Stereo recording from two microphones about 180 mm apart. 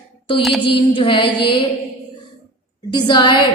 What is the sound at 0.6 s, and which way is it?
A woman's voice, 30° left (ahead or behind).